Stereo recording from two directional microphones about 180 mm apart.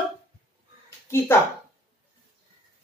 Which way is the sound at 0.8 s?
15° left (ahead or behind).